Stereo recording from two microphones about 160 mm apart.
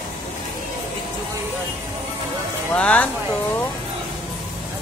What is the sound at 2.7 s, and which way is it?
Speech, 10° left (ahead or behind).